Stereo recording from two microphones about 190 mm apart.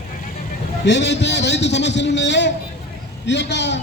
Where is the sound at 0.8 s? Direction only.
65° left (ahead or behind).